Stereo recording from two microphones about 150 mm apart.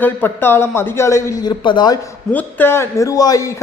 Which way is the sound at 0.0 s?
15° left (ahead or behind).